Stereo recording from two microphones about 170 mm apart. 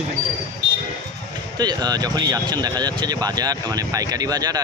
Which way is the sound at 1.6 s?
25° right (ahead or behind).